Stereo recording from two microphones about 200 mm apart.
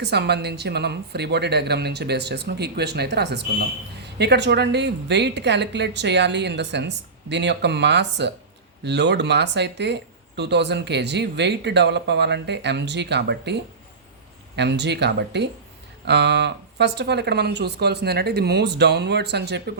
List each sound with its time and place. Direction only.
0.0 s speech: 55° right (ahead or behind)